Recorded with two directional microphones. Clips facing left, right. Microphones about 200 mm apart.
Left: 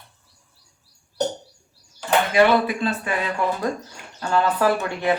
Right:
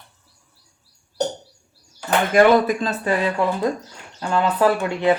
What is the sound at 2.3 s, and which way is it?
Speech, 40° right (ahead or behind).